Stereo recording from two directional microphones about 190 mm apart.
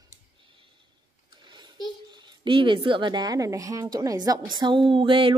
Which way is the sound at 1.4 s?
25° right (ahead or behind).